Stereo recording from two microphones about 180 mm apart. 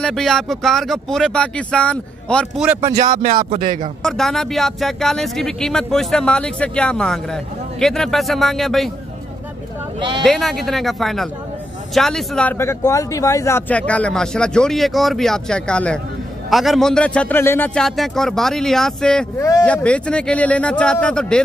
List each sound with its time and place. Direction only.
0.0 s speech: centre (ahead or behind)
2.6 s speech: 5° right (ahead or behind)
3.1 s speech: 40° right (ahead or behind)
4.0 s speech: centre (ahead or behind)
9.9 s speech: 25° right (ahead or behind)
10.2 s speech: centre (ahead or behind)